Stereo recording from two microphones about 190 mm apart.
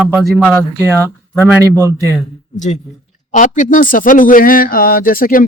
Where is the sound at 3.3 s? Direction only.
40° left (ahead or behind).